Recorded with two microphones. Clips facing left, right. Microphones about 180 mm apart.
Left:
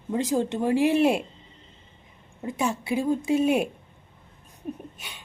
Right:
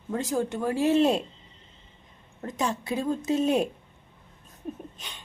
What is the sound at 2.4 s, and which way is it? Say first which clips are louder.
Speech: left 2 dB; 10° left (ahead or behind).